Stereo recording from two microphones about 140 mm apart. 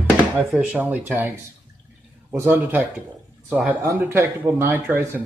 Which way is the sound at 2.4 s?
15° right (ahead or behind).